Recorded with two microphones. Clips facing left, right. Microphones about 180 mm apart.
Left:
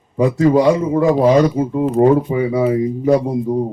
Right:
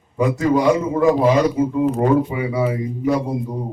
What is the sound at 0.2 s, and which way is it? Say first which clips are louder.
Speech: left 4 dB; 30° left (ahead or behind).